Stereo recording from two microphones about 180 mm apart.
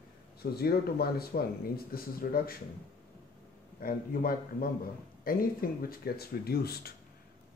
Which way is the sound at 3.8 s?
55° left (ahead or behind).